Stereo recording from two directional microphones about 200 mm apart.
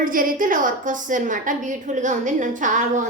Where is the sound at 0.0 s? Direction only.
45° right (ahead or behind).